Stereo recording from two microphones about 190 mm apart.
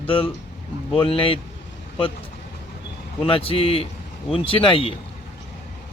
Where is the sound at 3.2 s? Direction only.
30° left (ahead or behind).